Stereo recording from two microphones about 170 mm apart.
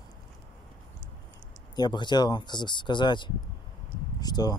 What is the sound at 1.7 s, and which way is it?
Speech, 25° left (ahead or behind).